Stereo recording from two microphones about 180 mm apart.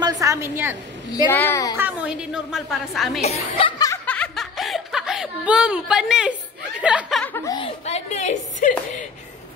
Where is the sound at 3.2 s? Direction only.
30° left (ahead or behind).